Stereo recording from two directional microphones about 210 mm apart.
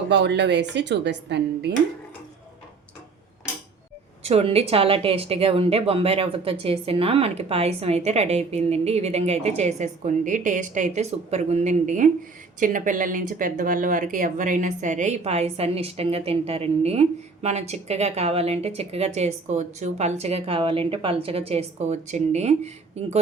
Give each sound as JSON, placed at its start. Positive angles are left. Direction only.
{"t": 0.1, "sound": "a woman's voice", "side_deg": -55}
{"t": 4.2, "sound": "speech", "side_deg": -30}